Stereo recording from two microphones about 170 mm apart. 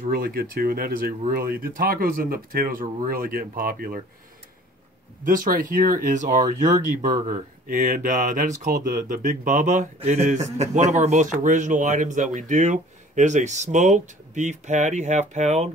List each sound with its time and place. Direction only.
0.0 s speech: 60° right (ahead or behind)
5.2 s speech: 50° right (ahead or behind)